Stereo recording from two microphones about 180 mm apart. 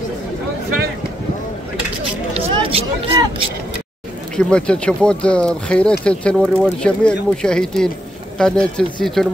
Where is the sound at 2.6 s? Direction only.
30° right (ahead or behind).